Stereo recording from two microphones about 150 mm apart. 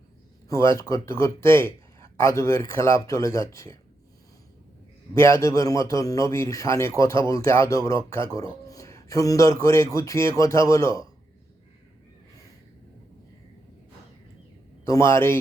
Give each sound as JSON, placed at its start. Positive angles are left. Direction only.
{"t": 0.4, "sound": "speech", "side_deg": 20}
{"t": 5.1, "sound": "speech", "side_deg": 15}
{"t": 14.8, "sound": "a man's voice", "side_deg": 20}